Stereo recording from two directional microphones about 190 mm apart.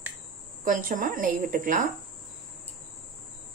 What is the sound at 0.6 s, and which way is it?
A woman's voice, 50° right (ahead or behind).